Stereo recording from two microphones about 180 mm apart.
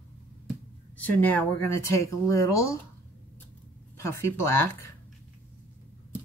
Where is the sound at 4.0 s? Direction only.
15° left (ahead or behind).